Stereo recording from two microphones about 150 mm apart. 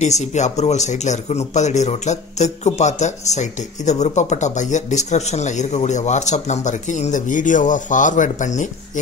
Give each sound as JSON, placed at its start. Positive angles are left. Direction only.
{"t": 0.0, "sound": "speech", "side_deg": 50}